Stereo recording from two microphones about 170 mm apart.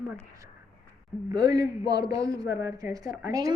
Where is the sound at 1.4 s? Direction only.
20° right (ahead or behind).